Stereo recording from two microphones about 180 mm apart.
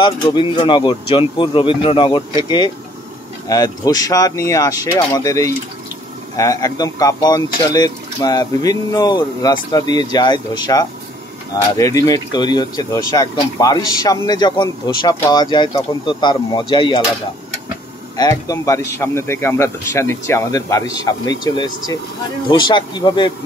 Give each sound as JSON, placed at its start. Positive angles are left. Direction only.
{"t": 0.0, "sound": "a man's voice", "side_deg": 25}
{"t": 18.1, "sound": "a man's voice", "side_deg": 20}